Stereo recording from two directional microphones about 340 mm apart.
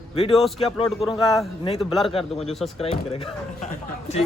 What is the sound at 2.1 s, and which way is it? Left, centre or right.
Speech, centre.